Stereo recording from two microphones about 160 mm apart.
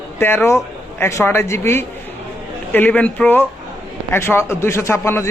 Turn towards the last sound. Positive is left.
turn(degrees=15)  # may be behind; listen again after turning